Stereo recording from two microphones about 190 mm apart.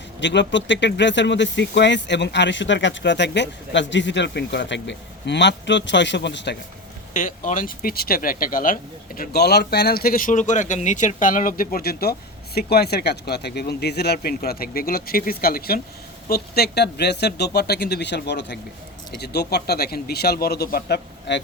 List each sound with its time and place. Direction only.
0.2 s speech: 70° left (ahead or behind)
7.1 s speech: 45° left (ahead or behind); by 21.4 s 65° left (ahead or behind)